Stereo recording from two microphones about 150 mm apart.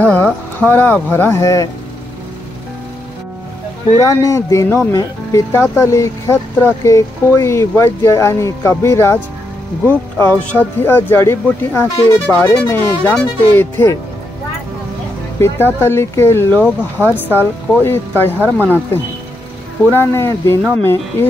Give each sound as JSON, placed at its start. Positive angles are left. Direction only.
{"t": 0.0, "sound": "speech", "side_deg": 10}
{"t": 4.0, "sound": "speech", "side_deg": 20}
{"t": 15.4, "sound": "speech", "side_deg": 15}
{"t": 17.0, "sound": "speech", "side_deg": -15}
{"t": 17.8, "sound": "speech", "side_deg": 15}
{"t": 19.9, "sound": "speech", "side_deg": 15}